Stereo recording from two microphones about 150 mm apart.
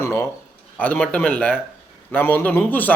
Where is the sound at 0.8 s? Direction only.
10° left (ahead or behind).